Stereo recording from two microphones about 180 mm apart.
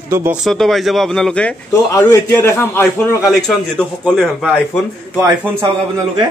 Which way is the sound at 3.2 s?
Centre (ahead or behind).